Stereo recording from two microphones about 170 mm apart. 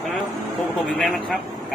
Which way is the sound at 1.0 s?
5° left (ahead or behind).